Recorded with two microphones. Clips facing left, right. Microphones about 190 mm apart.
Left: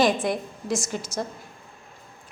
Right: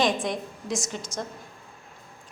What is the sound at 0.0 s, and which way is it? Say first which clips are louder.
A woman's voice: left 3 dB; 5° left (ahead or behind).